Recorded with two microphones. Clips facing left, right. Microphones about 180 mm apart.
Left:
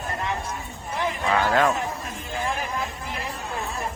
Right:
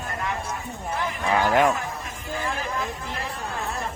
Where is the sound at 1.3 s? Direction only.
15° right (ahead or behind).